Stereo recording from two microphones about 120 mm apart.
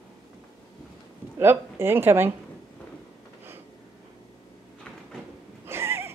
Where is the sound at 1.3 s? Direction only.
20° right (ahead or behind).